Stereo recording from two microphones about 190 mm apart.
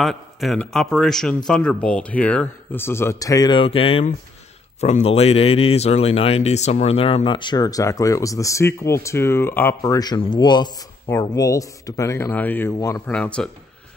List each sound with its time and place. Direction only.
0.0 s a man's voice: centre (ahead or behind); by 13.0 s 20° left (ahead or behind)
13.0 s a man's voice: 5° left (ahead or behind)